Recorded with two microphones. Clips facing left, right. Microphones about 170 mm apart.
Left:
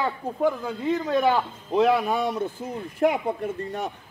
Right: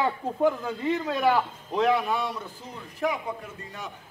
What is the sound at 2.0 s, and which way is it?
A man's voice, 45° left (ahead or behind).